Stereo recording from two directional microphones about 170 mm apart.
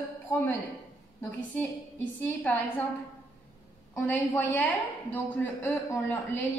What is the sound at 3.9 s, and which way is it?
A woman's voice, 15° left (ahead or behind).